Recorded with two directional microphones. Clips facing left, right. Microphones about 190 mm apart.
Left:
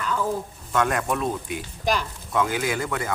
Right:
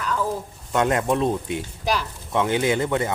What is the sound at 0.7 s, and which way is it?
Speech, 25° right (ahead or behind).